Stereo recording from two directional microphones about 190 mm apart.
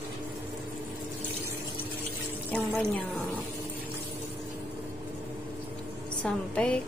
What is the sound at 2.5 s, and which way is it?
Speech, 10° left (ahead or behind).